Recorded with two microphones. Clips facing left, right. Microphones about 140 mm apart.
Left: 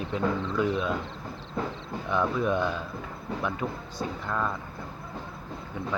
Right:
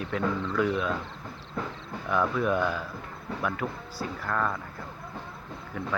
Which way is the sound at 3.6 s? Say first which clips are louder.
Left 1 dB; 5° right (ahead or behind).